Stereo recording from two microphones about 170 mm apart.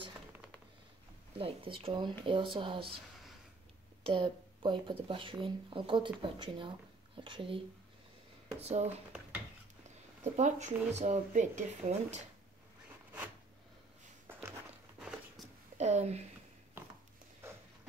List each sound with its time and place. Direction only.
1.4 s speech: 35° right (ahead or behind)
4.0 s speech: 30° right (ahead or behind)
8.6 s speech: 40° right (ahead or behind)
10.2 s speech: 45° right (ahead or behind)
14.2 s a sound: 15° right (ahead or behind)
15.0 s a sound: centre (ahead or behind)
15.8 s speech: 40° right (ahead or behind)